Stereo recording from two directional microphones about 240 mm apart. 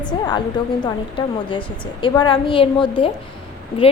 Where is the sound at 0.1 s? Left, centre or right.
Centre.